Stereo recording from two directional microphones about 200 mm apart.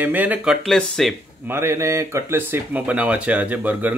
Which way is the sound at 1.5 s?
10° right (ahead or behind).